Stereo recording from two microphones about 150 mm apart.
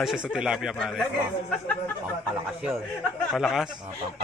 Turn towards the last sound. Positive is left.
turn(degrees=0)  # may be behind; listen again after turning